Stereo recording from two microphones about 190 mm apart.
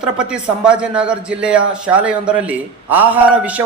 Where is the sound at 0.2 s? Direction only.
5° right (ahead or behind).